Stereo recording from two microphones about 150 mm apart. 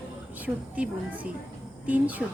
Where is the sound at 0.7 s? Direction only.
10° right (ahead or behind).